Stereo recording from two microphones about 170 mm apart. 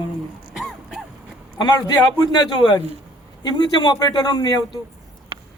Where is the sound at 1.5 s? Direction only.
25° left (ahead or behind).